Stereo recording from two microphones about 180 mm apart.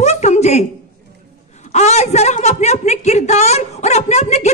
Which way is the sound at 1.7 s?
40° left (ahead or behind).